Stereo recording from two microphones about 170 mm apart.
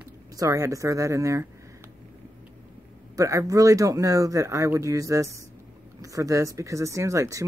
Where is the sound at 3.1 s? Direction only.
20° right (ahead or behind).